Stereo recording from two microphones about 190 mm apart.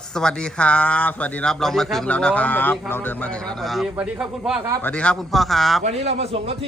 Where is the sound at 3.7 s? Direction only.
Centre (ahead or behind).